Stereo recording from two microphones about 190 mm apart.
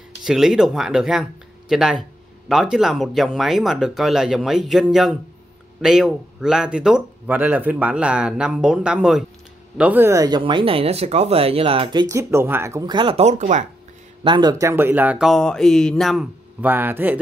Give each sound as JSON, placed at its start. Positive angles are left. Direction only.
{"t": 0.2, "sound": "speech", "side_deg": -5}
{"t": 14.2, "sound": "speech", "side_deg": -25}
{"t": 16.6, "sound": "a man's voice", "side_deg": -10}